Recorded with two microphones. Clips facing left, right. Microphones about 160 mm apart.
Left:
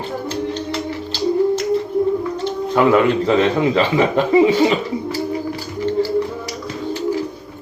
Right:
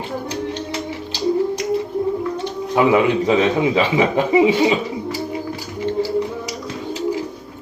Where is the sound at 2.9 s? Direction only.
15° right (ahead or behind).